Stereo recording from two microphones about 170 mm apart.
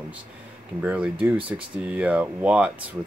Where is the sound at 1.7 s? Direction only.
5° right (ahead or behind).